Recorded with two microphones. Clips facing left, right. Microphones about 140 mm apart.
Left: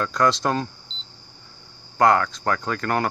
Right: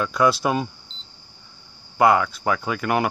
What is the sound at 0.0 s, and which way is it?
Speech, 10° right (ahead or behind).